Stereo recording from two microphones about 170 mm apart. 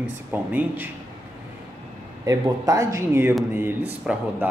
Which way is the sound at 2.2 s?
20° right (ahead or behind).